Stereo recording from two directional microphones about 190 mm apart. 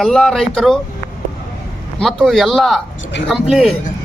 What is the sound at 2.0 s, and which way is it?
A man's voice, centre (ahead or behind).